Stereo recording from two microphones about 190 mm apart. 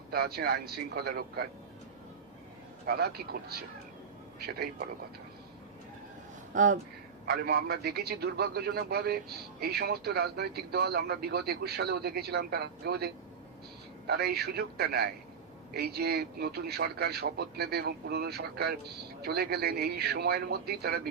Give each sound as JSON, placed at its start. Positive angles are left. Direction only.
{"t": 0.1, "sound": "speech", "side_deg": -55}
{"t": 2.8, "sound": "speech", "side_deg": -55}
{"t": 6.5, "sound": "speech", "side_deg": -40}
{"t": 7.3, "sound": "speech", "side_deg": -55}
{"t": 14.1, "sound": "speech", "side_deg": -55}